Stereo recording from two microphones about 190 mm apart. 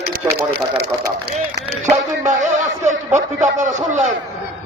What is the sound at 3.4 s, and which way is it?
Speech, 40° right (ahead or behind).